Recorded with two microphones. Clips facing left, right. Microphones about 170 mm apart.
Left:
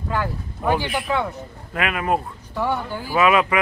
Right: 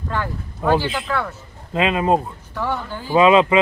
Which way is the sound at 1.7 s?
25° right (ahead or behind).